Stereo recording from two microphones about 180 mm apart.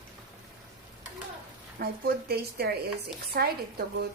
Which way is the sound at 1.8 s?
60° right (ahead or behind).